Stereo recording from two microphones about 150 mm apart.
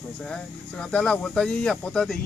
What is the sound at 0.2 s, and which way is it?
Speech, 5° left (ahead or behind).